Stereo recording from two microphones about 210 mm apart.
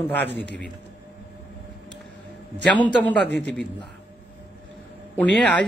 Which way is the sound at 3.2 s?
55° right (ahead or behind).